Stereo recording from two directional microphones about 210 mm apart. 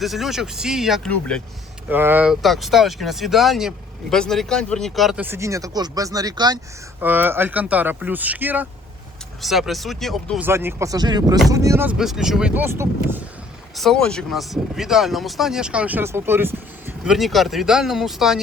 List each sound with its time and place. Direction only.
0.0 s speech: centre (ahead or behind)
1.9 s speech: 10° right (ahead or behind)
7.0 s speech: 10° right (ahead or behind)
13.7 s speech: centre (ahead or behind)